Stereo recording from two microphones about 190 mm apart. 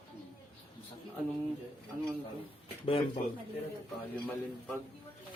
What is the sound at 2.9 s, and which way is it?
Speech, 30° left (ahead or behind).